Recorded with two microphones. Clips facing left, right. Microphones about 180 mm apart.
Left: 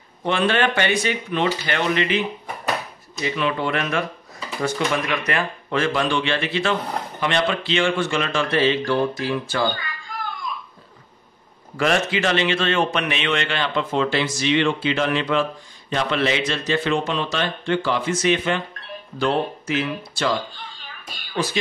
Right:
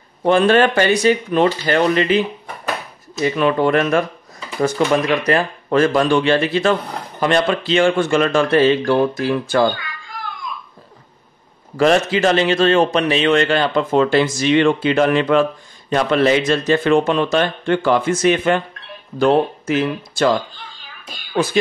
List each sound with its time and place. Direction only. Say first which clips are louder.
0.2 s speech: right 7 dB; 45° right (ahead or behind)
11.7 s speech: right 6 dB; 35° right (ahead or behind)